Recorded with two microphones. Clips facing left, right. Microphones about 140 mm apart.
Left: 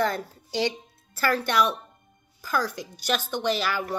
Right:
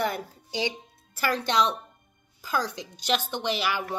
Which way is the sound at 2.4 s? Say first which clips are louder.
Left 1 dB; 20° right (ahead or behind).